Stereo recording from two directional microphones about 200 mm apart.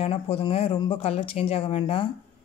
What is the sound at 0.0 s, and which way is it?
Speech, 30° left (ahead or behind).